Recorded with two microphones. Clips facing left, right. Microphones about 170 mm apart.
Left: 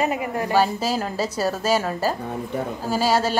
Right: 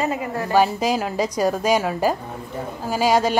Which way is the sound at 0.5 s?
15° right (ahead or behind).